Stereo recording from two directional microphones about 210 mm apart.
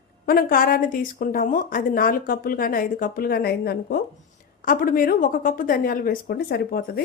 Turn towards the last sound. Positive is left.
turn(degrees=50)  # may be behind; listen again after turning